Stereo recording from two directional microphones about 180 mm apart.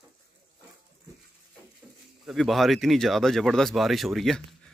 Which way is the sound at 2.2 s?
Centre (ahead or behind).